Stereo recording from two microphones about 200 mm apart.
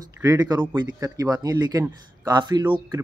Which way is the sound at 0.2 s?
15° right (ahead or behind).